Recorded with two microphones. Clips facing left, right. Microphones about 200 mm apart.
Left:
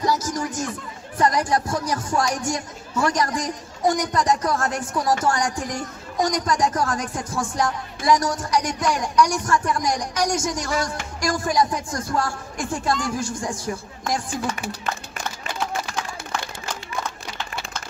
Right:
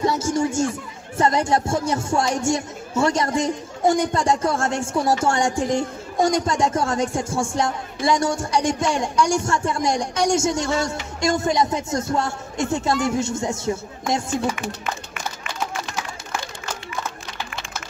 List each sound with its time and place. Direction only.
0.0 s a woman's voice: 25° right (ahead or behind)